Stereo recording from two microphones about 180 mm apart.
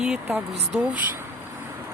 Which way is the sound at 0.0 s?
5° right (ahead or behind).